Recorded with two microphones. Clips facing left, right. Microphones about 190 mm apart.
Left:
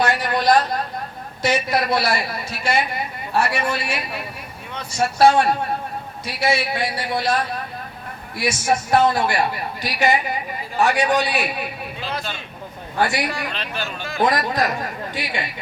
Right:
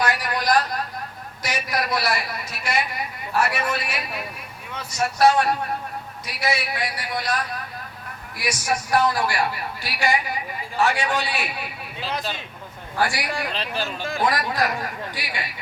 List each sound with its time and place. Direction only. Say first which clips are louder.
0.0 s a sound: left 5 dB; 25° left (ahead or behind)
1.4 s speech: left 7 dB; 25° left (ahead or behind)
4.9 s a man's voice: left 3 dB; 30° left (ahead or behind)
13.0 s speech: left 3 dB; 20° left (ahead or behind)
13.5 s speech: right 1 dB; 35° right (ahead or behind)
14.2 s speech: left 4 dB; 20° left (ahead or behind)